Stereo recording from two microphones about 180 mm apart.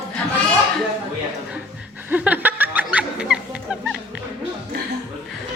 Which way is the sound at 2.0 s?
10° right (ahead or behind).